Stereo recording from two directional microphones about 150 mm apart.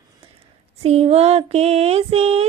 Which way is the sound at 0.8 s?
45° right (ahead or behind).